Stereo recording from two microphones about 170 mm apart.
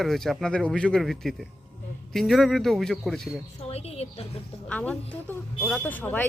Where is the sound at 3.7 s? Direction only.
35° left (ahead or behind).